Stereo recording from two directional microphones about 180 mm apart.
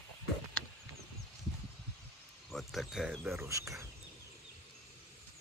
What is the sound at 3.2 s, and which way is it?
Cricket, 15° right (ahead or behind).